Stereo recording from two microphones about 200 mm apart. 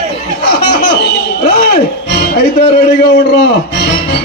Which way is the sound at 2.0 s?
55° left (ahead or behind).